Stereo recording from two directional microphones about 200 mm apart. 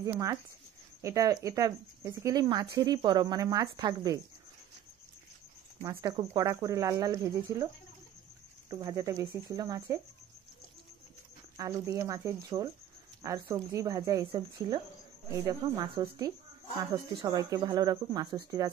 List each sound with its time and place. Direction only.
0.0 s speech: 15° right (ahead or behind)
5.8 s speech: 15° right (ahead or behind)
11.5 s speech: 15° right (ahead or behind)